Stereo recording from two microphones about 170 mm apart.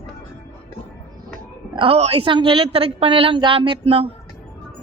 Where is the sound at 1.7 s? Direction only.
35° right (ahead or behind).